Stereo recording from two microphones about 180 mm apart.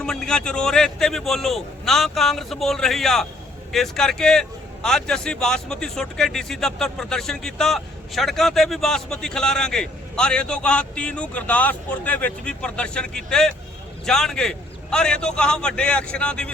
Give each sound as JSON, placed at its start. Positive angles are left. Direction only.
{"t": 0.0, "sound": "a man's voice", "side_deg": 5}